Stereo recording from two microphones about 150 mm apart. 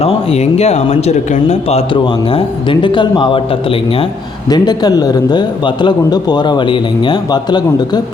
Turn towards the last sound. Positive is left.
turn(degrees=30)  # may be behind; listen again after turning